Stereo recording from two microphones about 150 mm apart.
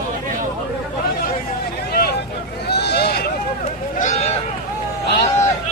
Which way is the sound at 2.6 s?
90° left.